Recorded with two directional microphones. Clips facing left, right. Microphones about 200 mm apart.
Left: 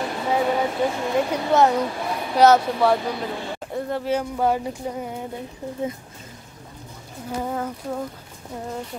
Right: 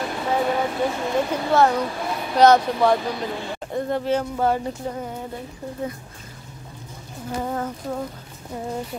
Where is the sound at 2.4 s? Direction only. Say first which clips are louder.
Even; 5° left (ahead or behind).